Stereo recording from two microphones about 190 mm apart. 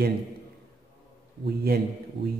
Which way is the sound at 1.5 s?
55° right (ahead or behind).